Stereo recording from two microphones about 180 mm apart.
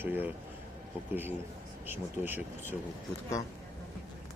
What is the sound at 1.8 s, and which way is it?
Speech, 10° right (ahead or behind).